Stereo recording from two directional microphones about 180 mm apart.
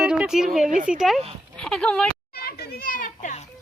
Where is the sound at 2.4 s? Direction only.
60° left (ahead or behind).